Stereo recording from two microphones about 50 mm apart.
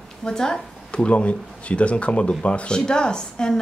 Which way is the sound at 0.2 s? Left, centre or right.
Centre.